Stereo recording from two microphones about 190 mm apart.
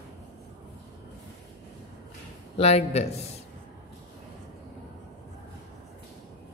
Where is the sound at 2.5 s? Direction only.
30° left (ahead or behind).